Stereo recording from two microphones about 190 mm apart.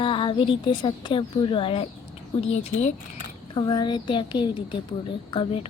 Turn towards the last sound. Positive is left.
turn(degrees=30)  # may be behind; listen again after turning